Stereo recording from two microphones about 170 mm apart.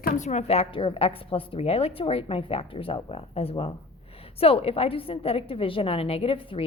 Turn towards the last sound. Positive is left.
turn(degrees=30)  # may be behind; listen again after turning